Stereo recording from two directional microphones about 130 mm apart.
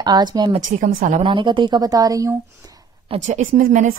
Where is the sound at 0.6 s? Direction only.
90° right.